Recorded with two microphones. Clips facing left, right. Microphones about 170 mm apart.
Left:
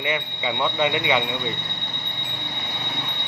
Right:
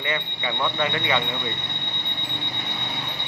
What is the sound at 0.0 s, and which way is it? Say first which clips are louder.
Speech: left 2 dB; 15° left (ahead or behind).